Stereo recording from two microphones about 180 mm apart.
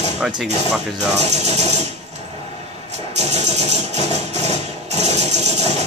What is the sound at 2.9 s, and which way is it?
Engine, 35° right (ahead or behind).